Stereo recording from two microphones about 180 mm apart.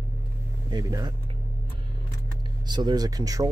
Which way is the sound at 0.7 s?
20° right (ahead or behind).